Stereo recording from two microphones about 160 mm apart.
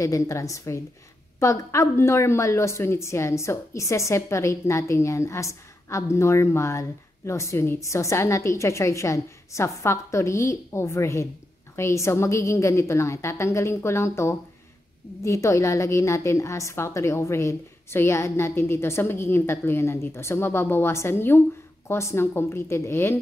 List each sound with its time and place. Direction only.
0.0 s a woman's voice: 20° left (ahead or behind)